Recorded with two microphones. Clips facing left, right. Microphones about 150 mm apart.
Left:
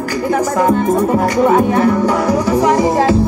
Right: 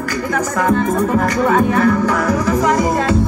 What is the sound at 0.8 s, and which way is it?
Music, 20° left (ahead or behind).